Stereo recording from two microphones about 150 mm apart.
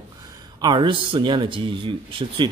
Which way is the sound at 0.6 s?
30° right (ahead or behind).